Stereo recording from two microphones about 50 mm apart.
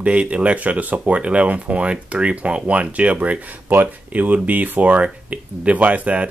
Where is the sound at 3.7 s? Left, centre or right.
Right.